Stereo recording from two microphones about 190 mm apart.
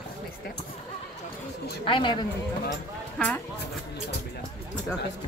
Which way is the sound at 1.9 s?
25° left (ahead or behind).